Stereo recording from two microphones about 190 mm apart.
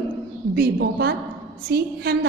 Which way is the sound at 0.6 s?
55° right (ahead or behind).